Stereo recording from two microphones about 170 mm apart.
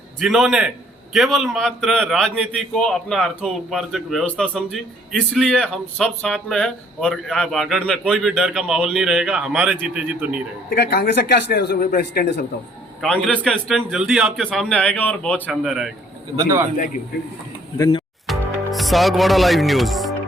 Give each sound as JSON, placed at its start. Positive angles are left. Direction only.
{"t": 0.2, "sound": "a man's voice", "side_deg": 0}
{"t": 10.7, "sound": "a man's voice", "side_deg": 65}
{"t": 13.0, "sound": "a man's voice", "side_deg": 5}
{"t": 16.4, "sound": "a man's voice", "side_deg": -15}
{"t": 17.7, "sound": "speech", "side_deg": 20}
{"t": 18.3, "sound": "music", "side_deg": 0}